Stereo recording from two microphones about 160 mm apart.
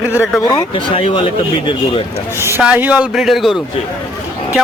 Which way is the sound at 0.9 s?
35° left (ahead or behind).